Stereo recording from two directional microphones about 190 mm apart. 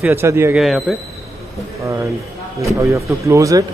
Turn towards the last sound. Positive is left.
turn(degrees=-15)  # may be behind; listen again after turning